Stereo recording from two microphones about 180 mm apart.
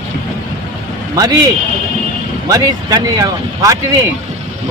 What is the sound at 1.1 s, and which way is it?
Speech, 20° right (ahead or behind).